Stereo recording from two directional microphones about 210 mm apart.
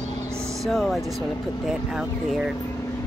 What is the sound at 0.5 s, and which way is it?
Speech, centre (ahead or behind).